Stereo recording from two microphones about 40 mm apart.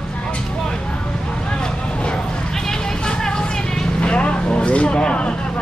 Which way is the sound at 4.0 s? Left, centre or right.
Left.